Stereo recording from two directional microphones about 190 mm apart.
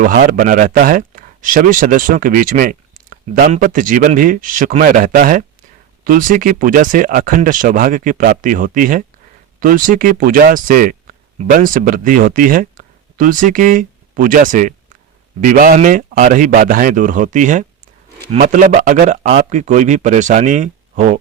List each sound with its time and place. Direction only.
0.0 s speech: 45° right (ahead or behind)